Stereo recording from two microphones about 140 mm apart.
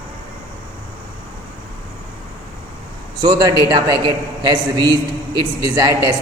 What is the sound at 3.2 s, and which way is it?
A man's voice, 30° right (ahead or behind).